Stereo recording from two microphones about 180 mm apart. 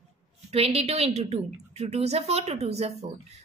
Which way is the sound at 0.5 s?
35° right (ahead or behind).